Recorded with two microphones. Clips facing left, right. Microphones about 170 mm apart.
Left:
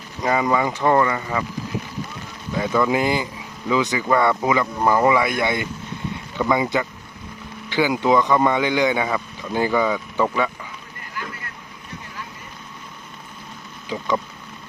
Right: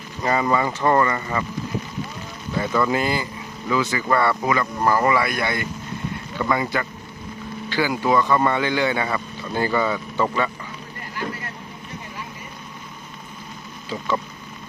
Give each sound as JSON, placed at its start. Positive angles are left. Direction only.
{"t": 0.2, "sound": "speech", "side_deg": 10}
{"t": 2.6, "sound": "speech", "side_deg": 10}